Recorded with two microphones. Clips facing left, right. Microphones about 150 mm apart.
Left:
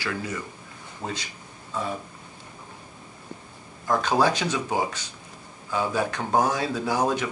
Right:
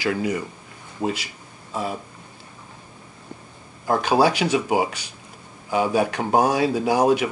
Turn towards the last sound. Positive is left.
turn(degrees=-15)  # may be behind; listen again after turning